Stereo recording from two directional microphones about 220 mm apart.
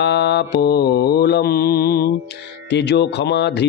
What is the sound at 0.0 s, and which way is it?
Speech, 50° left (ahead or behind).